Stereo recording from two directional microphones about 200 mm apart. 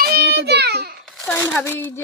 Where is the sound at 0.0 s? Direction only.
50° right (ahead or behind).